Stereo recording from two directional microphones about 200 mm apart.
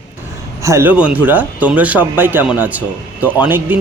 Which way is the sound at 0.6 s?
15° right (ahead or behind).